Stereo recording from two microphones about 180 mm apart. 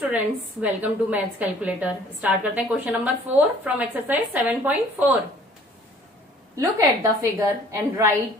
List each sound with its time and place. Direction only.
0.1 s a woman's voice: 10° right (ahead or behind)
6.5 s a woman's voice: 15° right (ahead or behind)